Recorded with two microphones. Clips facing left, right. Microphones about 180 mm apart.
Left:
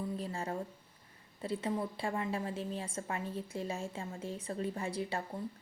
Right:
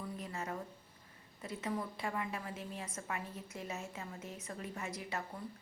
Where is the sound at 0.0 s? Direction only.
30° left (ahead or behind).